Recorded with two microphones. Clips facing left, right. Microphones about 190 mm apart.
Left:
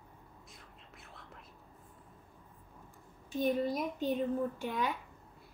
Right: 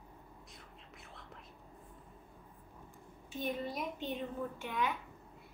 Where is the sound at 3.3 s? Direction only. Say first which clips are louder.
Left 7 dB; 40° left (ahead or behind).